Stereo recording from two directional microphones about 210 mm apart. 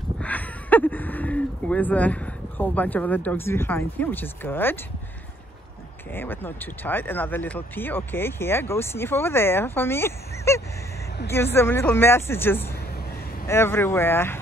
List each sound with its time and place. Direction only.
0.2 s speech: 5° left (ahead or behind)
6.1 s speech: 10° left (ahead or behind)